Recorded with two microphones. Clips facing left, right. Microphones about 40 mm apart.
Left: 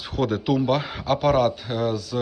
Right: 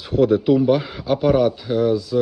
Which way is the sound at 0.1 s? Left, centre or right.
Left.